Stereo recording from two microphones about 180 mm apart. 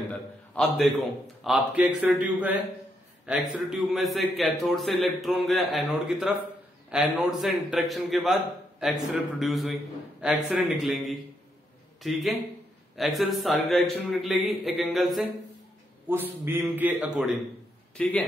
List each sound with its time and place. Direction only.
0.1 s a man's voice: 5° left (ahead or behind)
16.1 s a man's voice: 10° right (ahead or behind)
17.9 s a man's voice: 5° left (ahead or behind)